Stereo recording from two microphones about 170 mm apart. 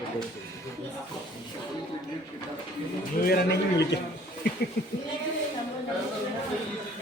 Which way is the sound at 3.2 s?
70° left (ahead or behind).